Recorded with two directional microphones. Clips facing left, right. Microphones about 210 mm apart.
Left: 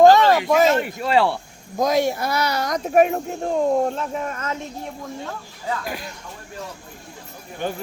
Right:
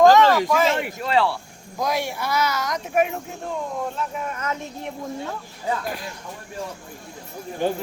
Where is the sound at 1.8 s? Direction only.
45° left (ahead or behind).